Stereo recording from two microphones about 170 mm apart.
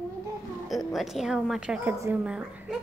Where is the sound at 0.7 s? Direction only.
Centre (ahead or behind).